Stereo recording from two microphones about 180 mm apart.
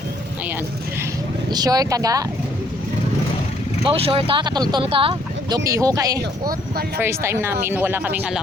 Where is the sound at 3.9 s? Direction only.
30° right (ahead or behind).